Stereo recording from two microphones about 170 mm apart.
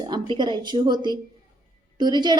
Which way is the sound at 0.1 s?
25° right (ahead or behind).